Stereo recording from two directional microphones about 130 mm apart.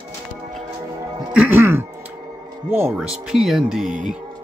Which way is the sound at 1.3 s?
15° right (ahead or behind).